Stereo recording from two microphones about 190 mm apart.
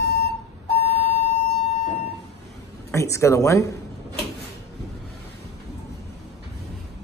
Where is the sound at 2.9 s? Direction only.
15° left (ahead or behind).